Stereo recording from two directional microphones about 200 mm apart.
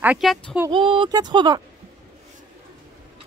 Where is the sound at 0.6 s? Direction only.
25° right (ahead or behind).